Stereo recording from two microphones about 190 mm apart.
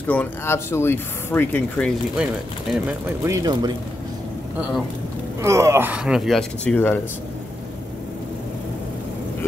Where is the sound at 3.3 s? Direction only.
20° right (ahead or behind).